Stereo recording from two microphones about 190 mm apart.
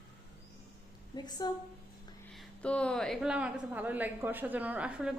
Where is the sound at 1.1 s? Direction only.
20° left (ahead or behind).